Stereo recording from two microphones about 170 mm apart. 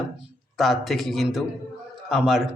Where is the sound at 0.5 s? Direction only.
Centre (ahead or behind).